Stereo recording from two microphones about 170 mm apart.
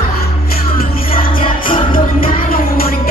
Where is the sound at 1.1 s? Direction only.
55° left (ahead or behind).